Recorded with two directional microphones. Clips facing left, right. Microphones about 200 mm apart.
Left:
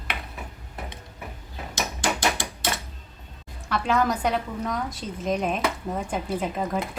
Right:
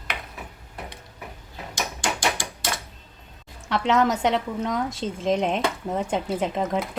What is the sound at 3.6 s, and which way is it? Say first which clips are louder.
A woman's voice: right 2 dB; 25° right (ahead or behind).